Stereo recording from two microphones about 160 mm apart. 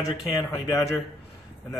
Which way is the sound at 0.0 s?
20° left (ahead or behind).